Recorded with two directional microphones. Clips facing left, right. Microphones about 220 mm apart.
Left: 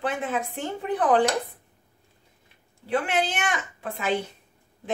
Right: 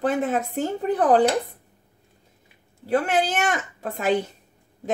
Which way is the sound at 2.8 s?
40° right (ahead or behind).